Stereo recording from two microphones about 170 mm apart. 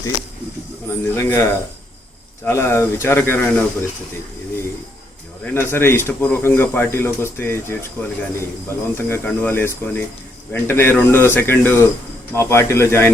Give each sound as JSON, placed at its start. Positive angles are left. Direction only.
{"t": 1.0, "sound": "speech", "side_deg": 15}
{"t": 5.5, "sound": "speech", "side_deg": 15}